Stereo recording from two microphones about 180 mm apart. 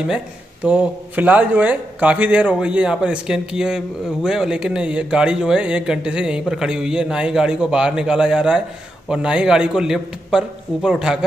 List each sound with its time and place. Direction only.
0.7 s speech: 5° right (ahead or behind)